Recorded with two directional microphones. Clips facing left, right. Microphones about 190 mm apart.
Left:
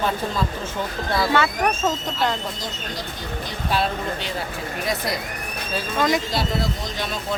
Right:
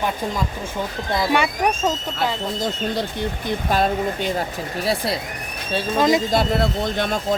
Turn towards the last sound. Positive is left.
turn(degrees=-50)  # may be behind; listen again after turning